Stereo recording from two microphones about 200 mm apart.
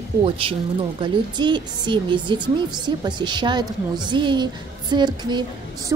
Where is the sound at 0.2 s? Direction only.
25° right (ahead or behind).